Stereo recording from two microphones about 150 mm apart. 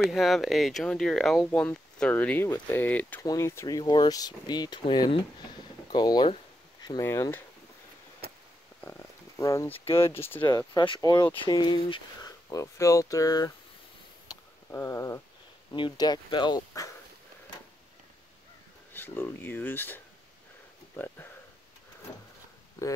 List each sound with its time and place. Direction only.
0.0 s speech: centre (ahead or behind); by 5.2 s 35° left (ahead or behind)
5.9 s a sound: 30° left (ahead or behind)
7.1 s speech: 15° left (ahead or behind)
8.8 s a sound: 15° left (ahead or behind)
9.8 s speech: 15° left (ahead or behind)
10.7 s speech: 30° left (ahead or behind)
14.3 s a sound: 20° left (ahead or behind)
15.7 s speech: 30° left (ahead or behind)
18.9 s speech: 15° left (ahead or behind)